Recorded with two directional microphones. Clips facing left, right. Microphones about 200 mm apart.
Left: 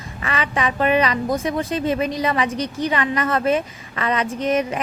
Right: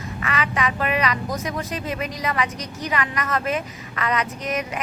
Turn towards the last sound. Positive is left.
turn(degrees=30)  # may be behind; listen again after turning